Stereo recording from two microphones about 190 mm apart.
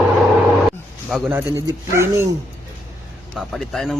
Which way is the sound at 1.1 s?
5° right (ahead or behind).